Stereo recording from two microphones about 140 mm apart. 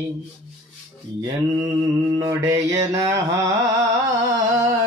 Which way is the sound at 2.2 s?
20° right (ahead or behind).